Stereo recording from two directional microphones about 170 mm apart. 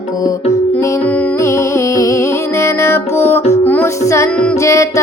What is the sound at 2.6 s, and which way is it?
Music, 15° left (ahead or behind).